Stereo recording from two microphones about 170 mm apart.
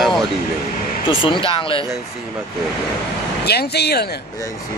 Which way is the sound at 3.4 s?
70° left (ahead or behind).